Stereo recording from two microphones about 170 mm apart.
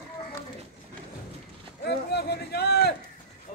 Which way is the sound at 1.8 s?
75° left (ahead or behind).